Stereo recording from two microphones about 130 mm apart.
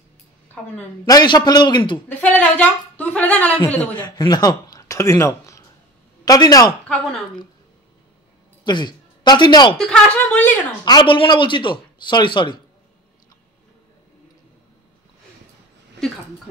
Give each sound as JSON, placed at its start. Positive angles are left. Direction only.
{"t": 1.0, "sound": "speech", "side_deg": 30}
{"t": 2.1, "sound": "a woman's voice", "side_deg": 15}
{"t": 4.0, "sound": "a man's voice", "side_deg": 30}
{"t": 6.8, "sound": "a woman's voice", "side_deg": 5}
{"t": 8.6, "sound": "speech", "side_deg": 35}
{"t": 9.8, "sound": "a woman's voice", "side_deg": 5}
{"t": 10.9, "sound": "speech", "side_deg": 35}